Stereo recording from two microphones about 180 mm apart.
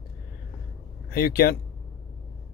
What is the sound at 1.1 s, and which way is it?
Speech, 55° left (ahead or behind).